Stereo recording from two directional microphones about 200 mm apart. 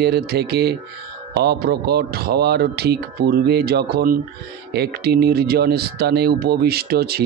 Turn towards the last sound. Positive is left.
turn(degrees=-50)  # may be behind; listen again after turning